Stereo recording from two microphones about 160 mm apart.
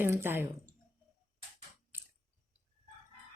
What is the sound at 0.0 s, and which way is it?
Speech, 15° right (ahead or behind).